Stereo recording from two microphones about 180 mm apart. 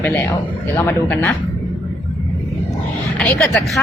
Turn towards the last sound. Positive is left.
turn(degrees=0)  # may be behind; listen again after turning